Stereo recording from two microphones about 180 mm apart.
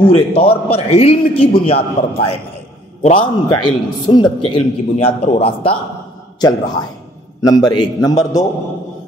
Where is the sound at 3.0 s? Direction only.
35° left (ahead or behind).